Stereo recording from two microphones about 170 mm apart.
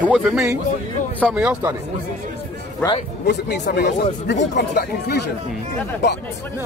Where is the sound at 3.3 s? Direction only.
80° left.